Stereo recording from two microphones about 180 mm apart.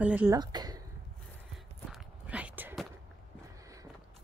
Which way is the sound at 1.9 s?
5° right (ahead or behind).